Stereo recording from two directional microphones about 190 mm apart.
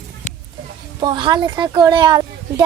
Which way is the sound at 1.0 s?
25° right (ahead or behind).